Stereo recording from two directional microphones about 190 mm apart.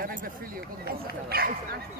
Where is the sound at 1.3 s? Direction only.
55° right (ahead or behind).